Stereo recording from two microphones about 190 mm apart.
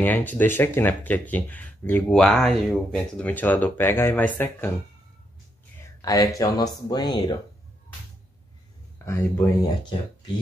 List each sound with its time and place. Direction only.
0.0 s speech: 10° left (ahead or behind)
5.9 s speech: 20° left (ahead or behind)
8.9 s speech: 15° left (ahead or behind)